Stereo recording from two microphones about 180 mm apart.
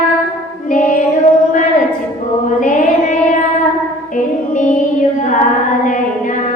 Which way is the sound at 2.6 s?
45° left (ahead or behind).